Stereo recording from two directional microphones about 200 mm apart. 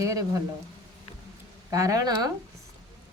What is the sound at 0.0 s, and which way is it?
Speech, 15° right (ahead or behind).